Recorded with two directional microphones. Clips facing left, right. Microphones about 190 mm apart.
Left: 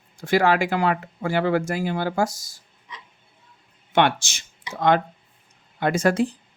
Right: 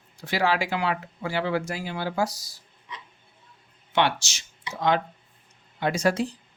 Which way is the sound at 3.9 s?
55° left (ahead or behind).